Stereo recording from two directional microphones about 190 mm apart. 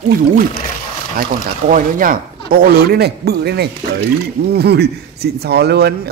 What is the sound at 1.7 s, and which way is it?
Speech, 45° right (ahead or behind).